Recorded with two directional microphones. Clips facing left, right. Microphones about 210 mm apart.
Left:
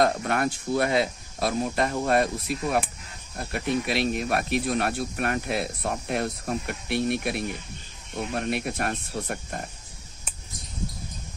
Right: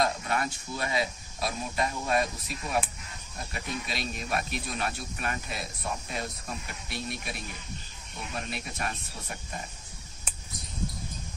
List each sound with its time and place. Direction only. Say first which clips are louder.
0.0 s speech: left 6 dB; 55° left (ahead or behind)